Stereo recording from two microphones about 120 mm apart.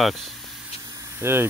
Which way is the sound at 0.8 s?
30° right (ahead or behind).